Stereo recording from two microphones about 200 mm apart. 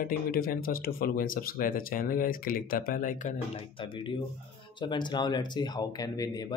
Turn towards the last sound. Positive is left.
turn(degrees=20)  # may be behind; listen again after turning